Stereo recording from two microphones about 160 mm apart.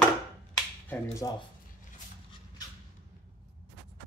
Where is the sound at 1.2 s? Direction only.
20° left (ahead or behind).